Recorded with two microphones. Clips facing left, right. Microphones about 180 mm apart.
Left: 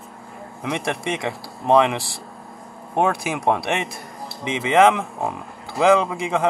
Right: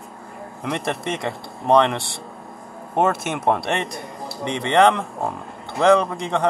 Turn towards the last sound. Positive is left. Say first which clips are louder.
# even
turn(degrees=5)  # may be behind; listen again after turning